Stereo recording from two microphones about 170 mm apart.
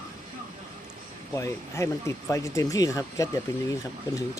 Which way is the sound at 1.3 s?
15° left (ahead or behind).